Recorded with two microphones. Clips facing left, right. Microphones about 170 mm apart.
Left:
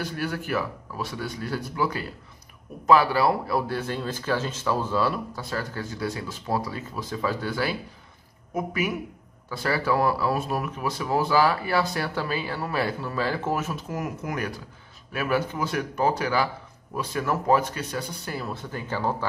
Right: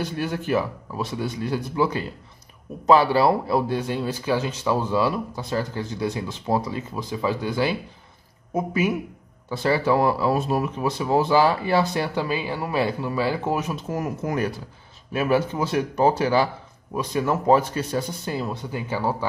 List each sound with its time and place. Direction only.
0.0 s speech: 25° right (ahead or behind)
13.9 s speech: 30° right (ahead or behind)
16.9 s speech: 20° right (ahead or behind)